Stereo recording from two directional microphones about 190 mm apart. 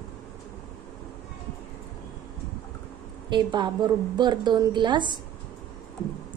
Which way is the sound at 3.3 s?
25° right (ahead or behind).